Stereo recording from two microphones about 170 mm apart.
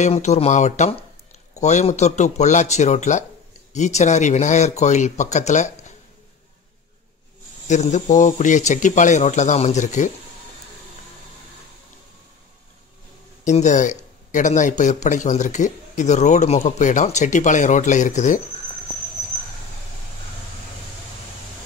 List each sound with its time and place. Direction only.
0.0 s speech: 40° left (ahead or behind)
7.6 s speech: 45° left (ahead or behind)
13.4 s speech: 45° left (ahead or behind)